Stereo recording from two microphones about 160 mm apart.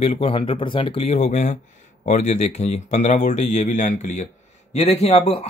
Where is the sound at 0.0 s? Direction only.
40° left (ahead or behind).